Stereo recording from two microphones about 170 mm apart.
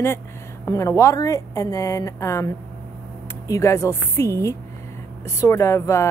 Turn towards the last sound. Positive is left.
turn(degrees=15)  # may be behind; listen again after turning